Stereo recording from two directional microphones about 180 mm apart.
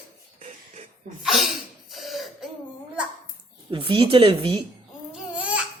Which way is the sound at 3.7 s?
30° right (ahead or behind).